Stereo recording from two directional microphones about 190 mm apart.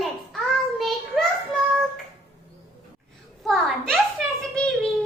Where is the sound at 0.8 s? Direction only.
Centre (ahead or behind).